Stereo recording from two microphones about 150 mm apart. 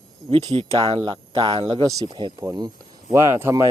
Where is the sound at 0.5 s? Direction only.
40° right (ahead or behind); by 3.7 s 20° right (ahead or behind).